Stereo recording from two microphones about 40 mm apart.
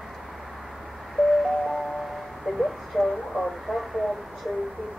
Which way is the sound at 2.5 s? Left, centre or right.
Right.